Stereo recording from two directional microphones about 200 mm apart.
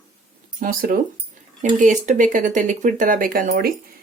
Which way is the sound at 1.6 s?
40° right (ahead or behind).